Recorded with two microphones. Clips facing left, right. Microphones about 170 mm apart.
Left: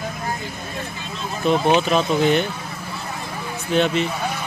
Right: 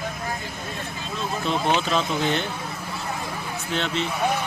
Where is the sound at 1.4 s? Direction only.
15° left (ahead or behind).